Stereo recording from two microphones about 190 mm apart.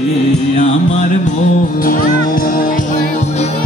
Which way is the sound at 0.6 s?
40° left (ahead or behind).